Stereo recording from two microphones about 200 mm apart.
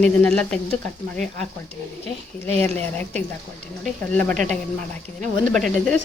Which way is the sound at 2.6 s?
10° left (ahead or behind).